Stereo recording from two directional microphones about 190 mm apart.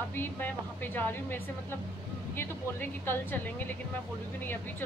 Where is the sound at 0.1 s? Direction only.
10° left (ahead or behind).